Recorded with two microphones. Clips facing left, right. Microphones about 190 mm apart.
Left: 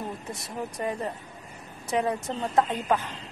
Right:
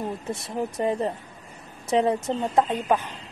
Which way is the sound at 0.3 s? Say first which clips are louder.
Right 6 dB; 25° right (ahead or behind).